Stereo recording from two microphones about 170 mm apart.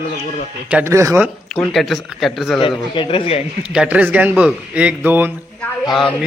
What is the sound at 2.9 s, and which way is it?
Speech, 30° left (ahead or behind).